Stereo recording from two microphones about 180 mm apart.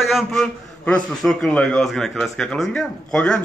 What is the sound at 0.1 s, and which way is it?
A man's voice, centre (ahead or behind).